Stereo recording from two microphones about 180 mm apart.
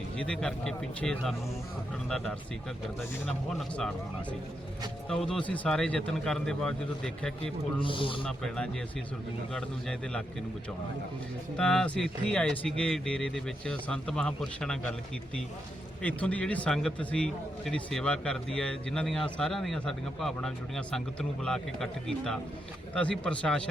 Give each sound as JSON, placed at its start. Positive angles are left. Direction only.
{"t": 0.2, "sound": "speech", "side_deg": 5}
{"t": 3.8, "sound": "speech", "side_deg": 5}
{"t": 7.8, "sound": "a man's voice", "side_deg": 30}
{"t": 8.2, "sound": "speech", "side_deg": 5}
{"t": 11.5, "sound": "speech", "side_deg": 5}
{"t": 16.0, "sound": "speech", "side_deg": 5}